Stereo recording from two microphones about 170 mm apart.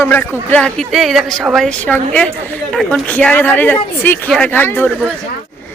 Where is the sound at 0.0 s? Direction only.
10° left (ahead or behind).